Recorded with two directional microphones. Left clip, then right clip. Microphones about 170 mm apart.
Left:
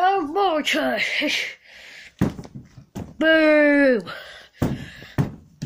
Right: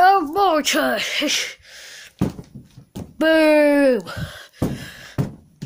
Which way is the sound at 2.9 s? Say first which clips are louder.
Right 1 dB; 15° right (ahead or behind).